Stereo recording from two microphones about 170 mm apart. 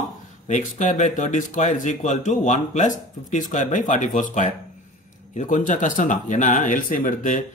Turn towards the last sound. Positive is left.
turn(degrees=50)  # may be behind; listen again after turning